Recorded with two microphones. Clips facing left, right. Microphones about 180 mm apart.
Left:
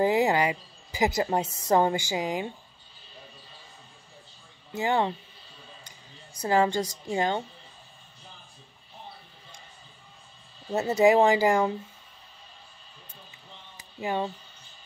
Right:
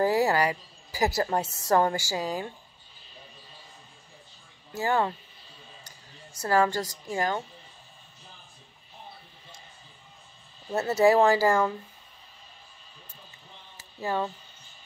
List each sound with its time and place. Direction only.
0.0 s a woman's voice: 20° left (ahead or behind)
4.7 s a woman's voice: 20° left (ahead or behind)
6.4 s a woman's voice: 20° left (ahead or behind)
10.7 s speech: 15° left (ahead or behind)
13.7 s a sound: 15° left (ahead or behind)